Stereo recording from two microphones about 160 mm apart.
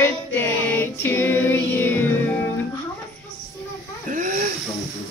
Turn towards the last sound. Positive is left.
turn(degrees=-55)  # may be behind; listen again after turning